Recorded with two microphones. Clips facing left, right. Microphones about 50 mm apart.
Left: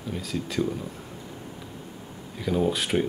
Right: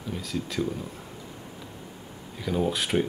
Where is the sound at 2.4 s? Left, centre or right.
Centre.